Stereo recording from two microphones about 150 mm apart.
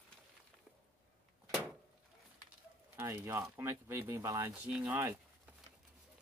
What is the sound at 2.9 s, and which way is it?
Speech, 15° right (ahead or behind).